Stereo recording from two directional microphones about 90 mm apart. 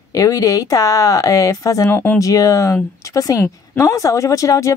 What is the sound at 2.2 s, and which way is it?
A woman's voice, 40° left (ahead or behind).